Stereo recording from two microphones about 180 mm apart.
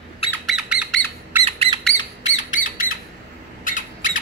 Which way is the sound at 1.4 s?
30° right (ahead or behind).